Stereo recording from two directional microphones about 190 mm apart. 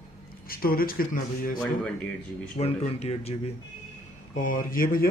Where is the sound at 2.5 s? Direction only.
35° left (ahead or behind).